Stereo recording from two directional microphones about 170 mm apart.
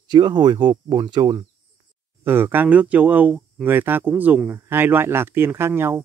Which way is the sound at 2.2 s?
15° right (ahead or behind).